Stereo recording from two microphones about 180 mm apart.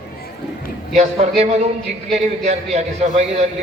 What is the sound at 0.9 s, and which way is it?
A man's voice, 35° right (ahead or behind).